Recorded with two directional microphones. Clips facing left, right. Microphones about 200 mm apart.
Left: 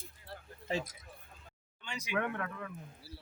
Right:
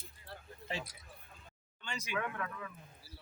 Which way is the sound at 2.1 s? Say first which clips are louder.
Left 4 dB; 60° left (ahead or behind).